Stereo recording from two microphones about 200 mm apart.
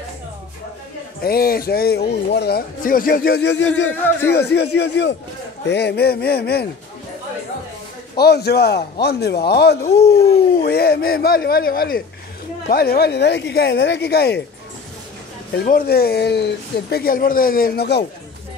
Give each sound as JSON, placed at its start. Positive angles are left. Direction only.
{"t": 1.2, "sound": "speech", "side_deg": 50}
{"t": 4.3, "sound": "a man's voice", "side_deg": 55}
{"t": 8.2, "sound": "speech", "side_deg": 55}
{"t": 15.5, "sound": "speech", "side_deg": 50}